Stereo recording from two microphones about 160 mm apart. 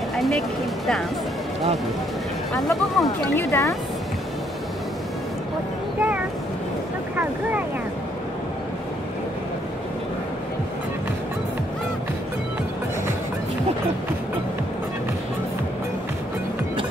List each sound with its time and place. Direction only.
0.1 s music: centre (ahead or behind)
2.5 s speech: centre (ahead or behind)
3.3 s speech: 20° left (ahead or behind)